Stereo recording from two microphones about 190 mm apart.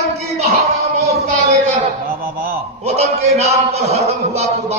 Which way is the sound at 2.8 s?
35° right (ahead or behind).